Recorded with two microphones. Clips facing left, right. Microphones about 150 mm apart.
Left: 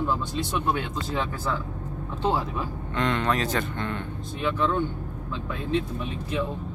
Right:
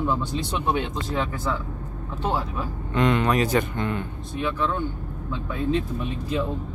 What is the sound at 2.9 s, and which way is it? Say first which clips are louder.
Speech: right 4 dB; 10° right (ahead or behind).